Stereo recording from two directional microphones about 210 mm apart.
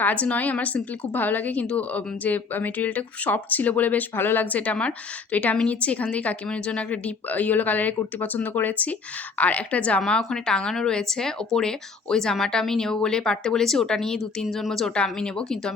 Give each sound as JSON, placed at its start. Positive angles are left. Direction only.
{"t": 0.0, "sound": "a woman's voice", "side_deg": 5}